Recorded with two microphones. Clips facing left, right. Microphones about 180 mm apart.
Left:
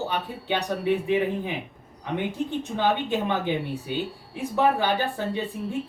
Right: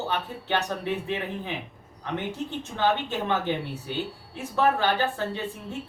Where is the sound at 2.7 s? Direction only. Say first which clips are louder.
Left 1 dB; 15° left (ahead or behind).